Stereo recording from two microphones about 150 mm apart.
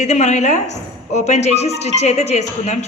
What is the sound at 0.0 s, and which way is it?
A woman's voice, 50° left (ahead or behind).